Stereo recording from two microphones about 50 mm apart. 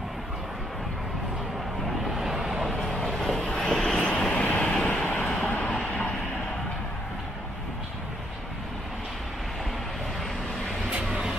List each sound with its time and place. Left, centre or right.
2.0 s vehicle: centre
3.3 s vehicle: centre
4.3 s vehicle: left
5.4 s train: left
11.1 s vehicle: centre